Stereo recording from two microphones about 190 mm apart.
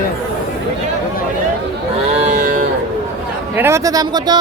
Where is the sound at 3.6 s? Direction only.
15° right (ahead or behind).